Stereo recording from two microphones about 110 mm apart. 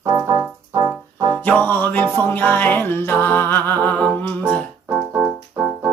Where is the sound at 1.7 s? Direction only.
15° left (ahead or behind).